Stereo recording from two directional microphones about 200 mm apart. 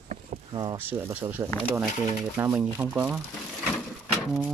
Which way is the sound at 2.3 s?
10° right (ahead or behind).